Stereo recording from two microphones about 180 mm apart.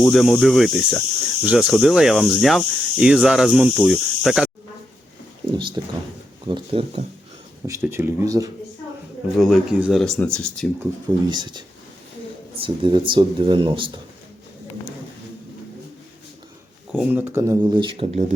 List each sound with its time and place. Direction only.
0.0 s speech: centre (ahead or behind)
5.5 s speech: 25° right (ahead or behind)
7.7 s speech: 15° right (ahead or behind)
9.4 s speech: centre (ahead or behind)
11.3 s speech: 25° right (ahead or behind)
16.9 s speech: 10° right (ahead or behind); by 18.3 s 40° right (ahead or behind)